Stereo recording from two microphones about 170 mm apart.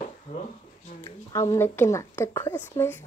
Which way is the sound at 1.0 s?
15° left (ahead or behind).